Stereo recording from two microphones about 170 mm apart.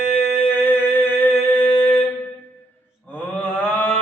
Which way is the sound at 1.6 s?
30° left (ahead or behind).